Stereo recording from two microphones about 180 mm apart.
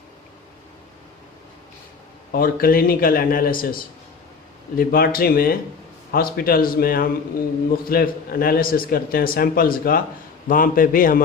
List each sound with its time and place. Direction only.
2.3 s a man's voice: 55° left (ahead or behind)